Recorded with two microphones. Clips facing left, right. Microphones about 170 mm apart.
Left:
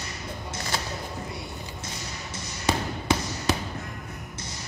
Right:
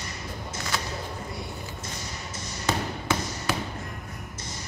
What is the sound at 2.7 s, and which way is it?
Basketball bounce, 15° left (ahead or behind).